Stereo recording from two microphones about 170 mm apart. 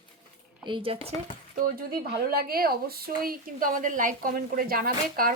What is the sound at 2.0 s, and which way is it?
A woman's voice, 60° right (ahead or behind).